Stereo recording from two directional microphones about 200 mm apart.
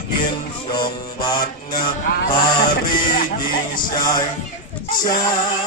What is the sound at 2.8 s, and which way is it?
Music, 45° left (ahead or behind).